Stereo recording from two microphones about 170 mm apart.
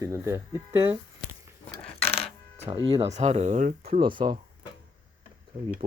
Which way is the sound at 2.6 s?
30° right (ahead or behind).